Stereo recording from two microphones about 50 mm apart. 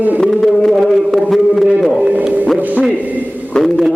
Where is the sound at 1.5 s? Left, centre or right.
Centre.